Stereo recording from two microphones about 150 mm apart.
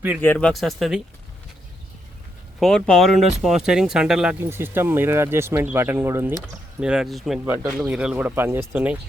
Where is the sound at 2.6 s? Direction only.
Centre (ahead or behind).